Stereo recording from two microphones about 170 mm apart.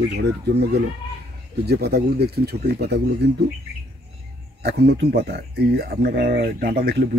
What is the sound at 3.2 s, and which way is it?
Speech, 85° right.